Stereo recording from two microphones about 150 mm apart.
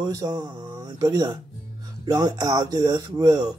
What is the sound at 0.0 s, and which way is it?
Mantra, 25° right (ahead or behind).